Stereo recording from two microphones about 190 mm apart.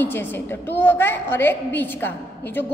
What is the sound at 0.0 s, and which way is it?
A woman's voice, 10° left (ahead or behind).